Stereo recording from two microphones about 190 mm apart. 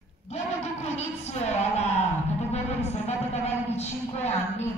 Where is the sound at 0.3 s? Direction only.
35° left (ahead or behind).